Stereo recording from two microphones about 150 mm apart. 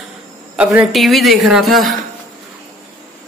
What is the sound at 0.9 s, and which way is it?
A man's voice, centre (ahead or behind).